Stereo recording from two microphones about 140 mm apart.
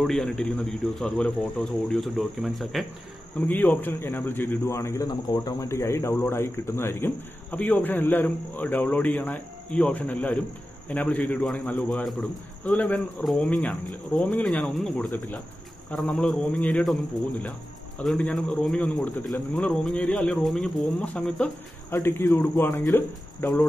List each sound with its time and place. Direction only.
0.0 s speech: 5° left (ahead or behind)
3.3 s speech: 10° left (ahead or behind)